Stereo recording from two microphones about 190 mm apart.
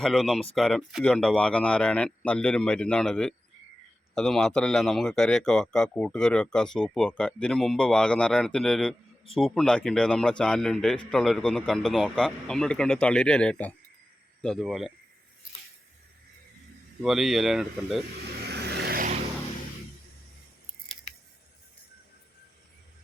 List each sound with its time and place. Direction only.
0.0 s speech: centre (ahead or behind)
17.0 s speech: centre (ahead or behind)
18.3 s vehicle: 60° right (ahead or behind)